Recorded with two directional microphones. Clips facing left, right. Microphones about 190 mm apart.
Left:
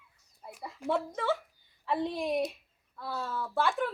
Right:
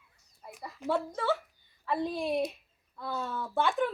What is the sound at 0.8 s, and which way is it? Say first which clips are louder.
Speech: even; 10° left (ahead or behind).